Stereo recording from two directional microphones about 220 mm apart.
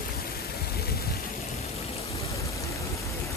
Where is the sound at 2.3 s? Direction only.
15° left (ahead or behind).